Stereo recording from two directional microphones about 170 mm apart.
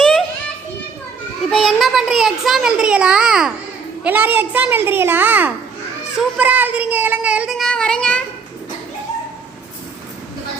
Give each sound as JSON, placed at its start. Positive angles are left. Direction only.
{"t": 0.0, "sound": "child singing", "side_deg": 0}
{"t": 1.5, "sound": "a child's voice", "side_deg": 0}